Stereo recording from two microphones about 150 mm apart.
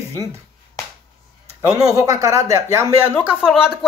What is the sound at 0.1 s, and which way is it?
Speech, 20° right (ahead or behind).